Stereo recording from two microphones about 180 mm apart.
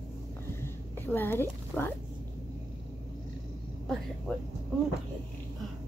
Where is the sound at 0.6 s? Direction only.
10° left (ahead or behind).